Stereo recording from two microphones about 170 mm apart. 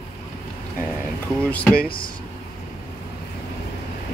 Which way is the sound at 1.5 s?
10° left (ahead or behind).